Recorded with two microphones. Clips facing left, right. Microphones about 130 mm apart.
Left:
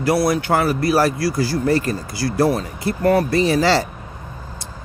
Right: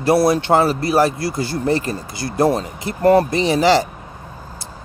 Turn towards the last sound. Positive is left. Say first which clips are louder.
# right 1 dB
turn(degrees=-20)  # may be behind; listen again after turning